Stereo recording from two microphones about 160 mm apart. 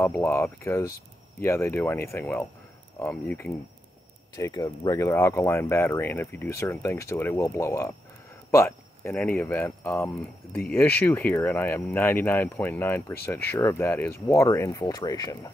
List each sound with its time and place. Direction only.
0.0 s speech: 15° left (ahead or behind)